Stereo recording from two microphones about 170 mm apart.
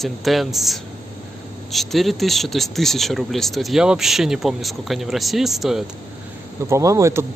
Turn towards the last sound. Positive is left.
turn(degrees=-15)  # may be behind; listen again after turning